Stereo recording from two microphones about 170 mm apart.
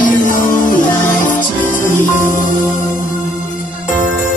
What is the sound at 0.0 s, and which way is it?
Music, 50° left (ahead or behind).